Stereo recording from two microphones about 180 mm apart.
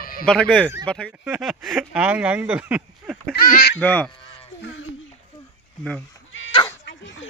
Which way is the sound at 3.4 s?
55° left (ahead or behind).